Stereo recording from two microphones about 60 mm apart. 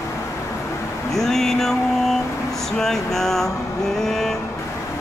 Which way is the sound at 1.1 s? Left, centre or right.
Centre.